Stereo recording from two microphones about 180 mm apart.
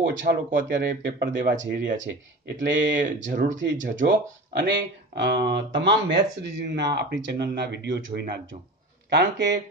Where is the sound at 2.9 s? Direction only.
45° right (ahead or behind).